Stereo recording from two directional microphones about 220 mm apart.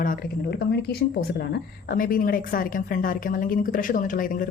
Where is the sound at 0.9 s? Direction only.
50° left (ahead or behind).